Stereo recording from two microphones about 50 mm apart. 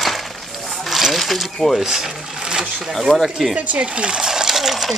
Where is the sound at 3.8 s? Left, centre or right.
Centre.